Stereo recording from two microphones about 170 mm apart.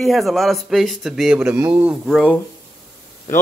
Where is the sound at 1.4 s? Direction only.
20° right (ahead or behind).